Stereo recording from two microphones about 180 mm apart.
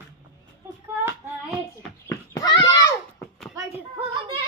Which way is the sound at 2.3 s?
20° left (ahead or behind).